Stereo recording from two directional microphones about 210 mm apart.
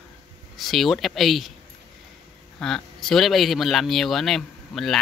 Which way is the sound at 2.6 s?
Centre (ahead or behind).